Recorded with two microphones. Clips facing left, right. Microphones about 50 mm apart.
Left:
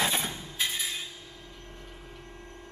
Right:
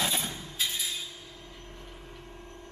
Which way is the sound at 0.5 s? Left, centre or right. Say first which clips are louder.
Left 1 dB; left.